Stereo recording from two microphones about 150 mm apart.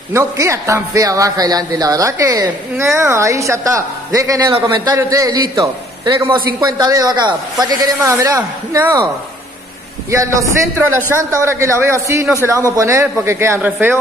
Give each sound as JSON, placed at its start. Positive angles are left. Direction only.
{"t": 0.1, "sound": "speech", "side_deg": -20}
{"t": 10.1, "sound": "a man's voice", "side_deg": -20}